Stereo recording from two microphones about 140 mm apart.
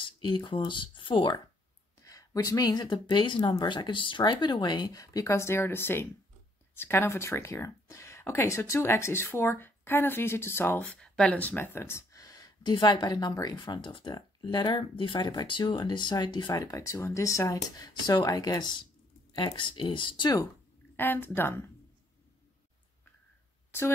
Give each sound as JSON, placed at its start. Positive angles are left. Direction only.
{"t": 0.0, "sound": "speech", "side_deg": 35}
{"t": 20.9, "sound": "a woman's voice", "side_deg": 15}